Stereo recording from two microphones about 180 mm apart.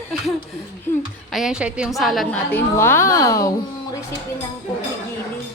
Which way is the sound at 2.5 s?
15° left (ahead or behind).